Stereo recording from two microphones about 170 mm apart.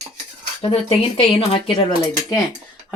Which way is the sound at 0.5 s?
35° left (ahead or behind).